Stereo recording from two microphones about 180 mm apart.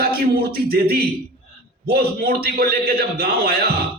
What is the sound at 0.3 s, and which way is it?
A man's voice, 55° right (ahead or behind).